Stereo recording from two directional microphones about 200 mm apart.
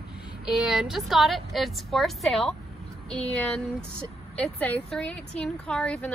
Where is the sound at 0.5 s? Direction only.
Centre (ahead or behind).